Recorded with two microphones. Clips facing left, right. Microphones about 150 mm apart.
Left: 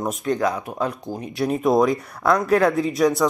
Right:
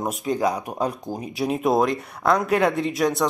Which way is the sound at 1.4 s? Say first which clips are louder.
Left 2 dB; centre (ahead or behind).